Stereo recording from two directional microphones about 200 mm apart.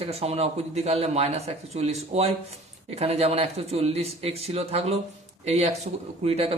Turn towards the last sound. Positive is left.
turn(degrees=-30)  # may be behind; listen again after turning